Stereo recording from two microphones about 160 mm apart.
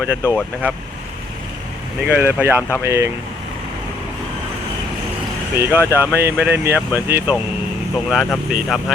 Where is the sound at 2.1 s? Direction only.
10° right (ahead or behind).